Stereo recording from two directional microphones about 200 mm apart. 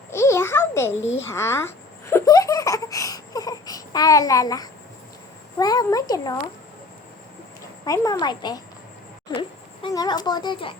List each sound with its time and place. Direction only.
0.1 s a sound: 15° left (ahead or behind)
5.5 s speech: 20° left (ahead or behind)
7.9 s speech: 15° left (ahead or behind)